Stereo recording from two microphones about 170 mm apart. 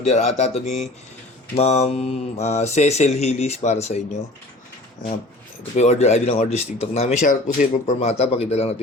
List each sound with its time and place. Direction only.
0.0 s mantra: 40° left (ahead or behind)
5.7 s mantra: 40° left (ahead or behind)
7.9 s mantra: 35° left (ahead or behind)